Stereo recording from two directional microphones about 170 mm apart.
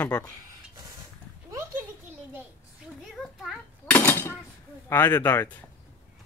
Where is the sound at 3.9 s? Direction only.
15° left (ahead or behind).